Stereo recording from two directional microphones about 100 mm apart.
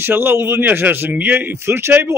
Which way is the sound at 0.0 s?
20° right (ahead or behind).